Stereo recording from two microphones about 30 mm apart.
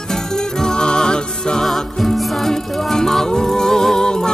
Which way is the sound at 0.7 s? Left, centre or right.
Left.